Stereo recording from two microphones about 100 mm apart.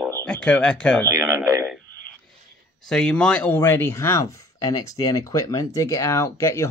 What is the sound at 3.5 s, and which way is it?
Speech, 25° left (ahead or behind).